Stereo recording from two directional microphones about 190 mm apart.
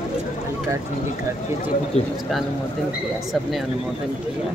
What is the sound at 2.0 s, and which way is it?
Speech, 30° left (ahead or behind).